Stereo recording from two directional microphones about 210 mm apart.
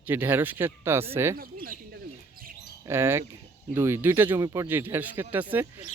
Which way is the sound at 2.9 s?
10° right (ahead or behind).